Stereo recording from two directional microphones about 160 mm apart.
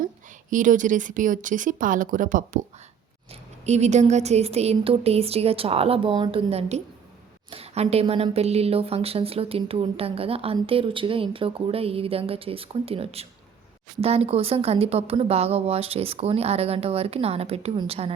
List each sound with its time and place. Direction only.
0.5 s speech: 55° right (ahead or behind)
3.7 s a woman's voice: 45° right (ahead or behind)